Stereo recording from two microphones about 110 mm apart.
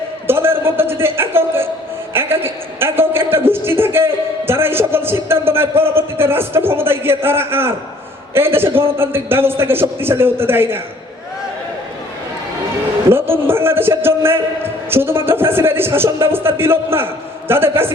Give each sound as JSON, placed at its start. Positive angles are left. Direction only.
{"t": 0.3, "sound": "a man's voice", "side_deg": -20}
{"t": 13.1, "sound": "a man's voice", "side_deg": -20}